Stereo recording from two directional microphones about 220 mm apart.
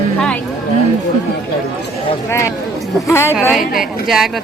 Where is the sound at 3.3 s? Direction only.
5° right (ahead or behind).